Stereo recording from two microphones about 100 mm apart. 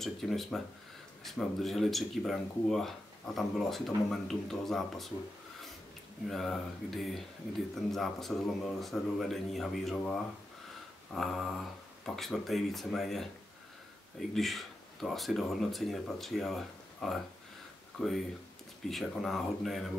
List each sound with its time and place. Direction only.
0.0 s speech: centre (ahead or behind)
6.2 s speech: 5° left (ahead or behind)
14.3 s speech: centre (ahead or behind)